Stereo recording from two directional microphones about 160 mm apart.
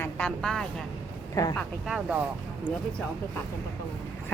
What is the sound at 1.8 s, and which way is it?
Speech, 5° right (ahead or behind).